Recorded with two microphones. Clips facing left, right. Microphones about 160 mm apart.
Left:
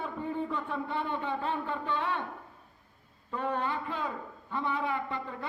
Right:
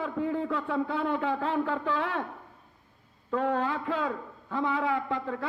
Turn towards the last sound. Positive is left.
turn(degrees=-90)